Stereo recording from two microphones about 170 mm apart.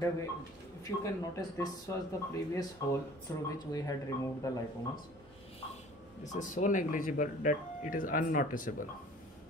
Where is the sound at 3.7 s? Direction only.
25° left (ahead or behind).